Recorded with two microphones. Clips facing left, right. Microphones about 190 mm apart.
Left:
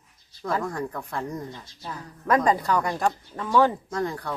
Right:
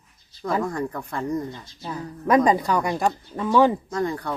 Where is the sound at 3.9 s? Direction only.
Centre (ahead or behind).